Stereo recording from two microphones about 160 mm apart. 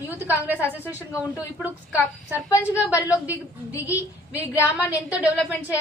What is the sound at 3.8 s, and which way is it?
A woman's voice, 10° right (ahead or behind).